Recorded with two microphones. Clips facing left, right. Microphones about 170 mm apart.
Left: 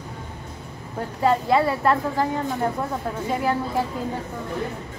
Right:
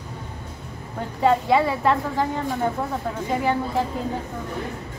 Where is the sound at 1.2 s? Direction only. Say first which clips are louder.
Right 1 dB; centre (ahead or behind).